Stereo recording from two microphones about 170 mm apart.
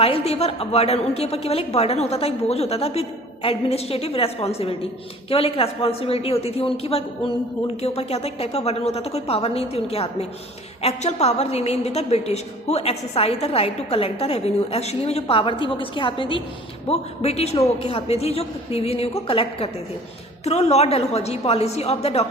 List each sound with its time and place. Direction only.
0.0 s a woman's voice: 35° left (ahead or behind)